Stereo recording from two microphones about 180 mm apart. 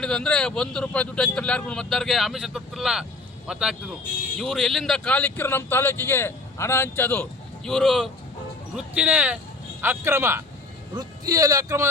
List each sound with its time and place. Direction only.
0.0 s speech: 5° left (ahead or behind); by 11.9 s 15° right (ahead or behind)